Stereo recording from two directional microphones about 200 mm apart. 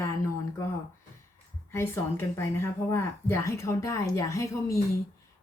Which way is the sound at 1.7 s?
15° left (ahead or behind).